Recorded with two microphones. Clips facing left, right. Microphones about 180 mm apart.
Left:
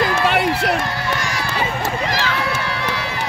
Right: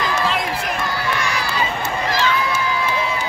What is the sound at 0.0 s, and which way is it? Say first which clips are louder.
Run: left 4 dB; 65° left (ahead or behind).